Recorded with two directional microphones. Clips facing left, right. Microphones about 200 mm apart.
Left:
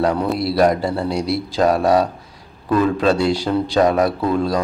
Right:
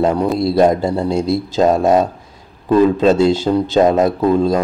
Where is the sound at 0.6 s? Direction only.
25° right (ahead or behind).